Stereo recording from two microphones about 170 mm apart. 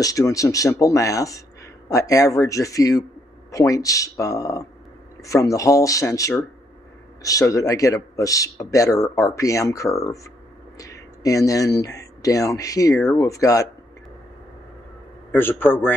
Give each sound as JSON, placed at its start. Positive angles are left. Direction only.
{"t": 0.0, "sound": "speech", "side_deg": 20}
{"t": 15.3, "sound": "a man's voice", "side_deg": 10}